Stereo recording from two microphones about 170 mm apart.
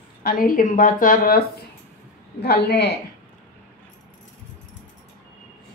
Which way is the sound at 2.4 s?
70° left (ahead or behind).